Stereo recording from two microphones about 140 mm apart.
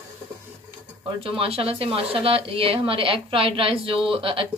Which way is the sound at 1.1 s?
40° right (ahead or behind).